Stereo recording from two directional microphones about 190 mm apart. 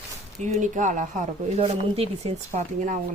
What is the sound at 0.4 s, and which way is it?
Speech, 40° right (ahead or behind).